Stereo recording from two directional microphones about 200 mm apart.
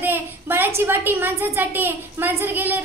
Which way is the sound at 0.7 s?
10° right (ahead or behind).